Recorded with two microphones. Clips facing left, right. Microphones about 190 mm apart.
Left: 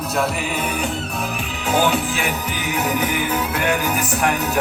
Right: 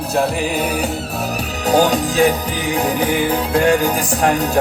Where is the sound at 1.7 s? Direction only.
40° right (ahead or behind).